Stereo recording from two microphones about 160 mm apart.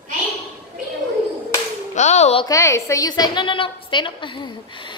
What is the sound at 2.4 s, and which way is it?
A woman's voice, 20° left (ahead or behind).